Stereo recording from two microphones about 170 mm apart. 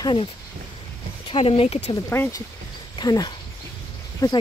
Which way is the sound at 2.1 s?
15° left (ahead or behind).